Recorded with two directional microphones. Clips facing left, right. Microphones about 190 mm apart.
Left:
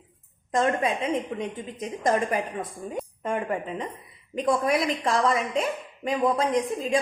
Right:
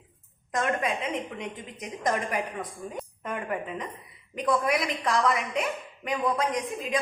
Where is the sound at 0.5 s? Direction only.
25° left (ahead or behind).